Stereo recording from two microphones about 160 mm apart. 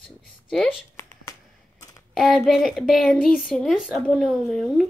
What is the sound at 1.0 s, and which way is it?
Finger snapping, 15° left (ahead or behind).